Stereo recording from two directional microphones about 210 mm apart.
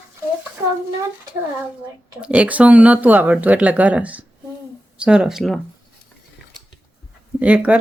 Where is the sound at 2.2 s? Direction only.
5° right (ahead or behind).